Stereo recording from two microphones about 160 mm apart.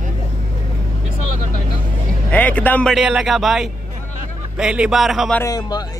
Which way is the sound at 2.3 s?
10° left (ahead or behind).